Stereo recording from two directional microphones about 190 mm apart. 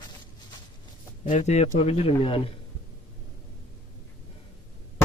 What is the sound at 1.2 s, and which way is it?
Speech, 40° left (ahead or behind).